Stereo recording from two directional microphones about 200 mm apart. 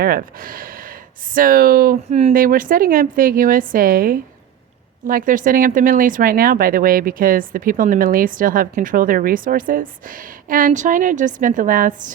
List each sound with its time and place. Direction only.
0.0 s speech: 45° right (ahead or behind)